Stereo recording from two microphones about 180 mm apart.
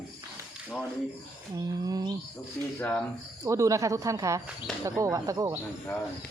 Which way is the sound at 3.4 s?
15° right (ahead or behind).